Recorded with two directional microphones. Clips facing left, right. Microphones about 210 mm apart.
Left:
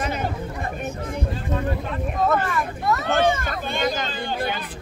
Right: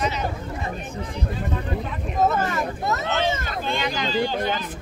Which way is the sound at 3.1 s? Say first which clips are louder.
Left 4 dB; 50° left (ahead or behind).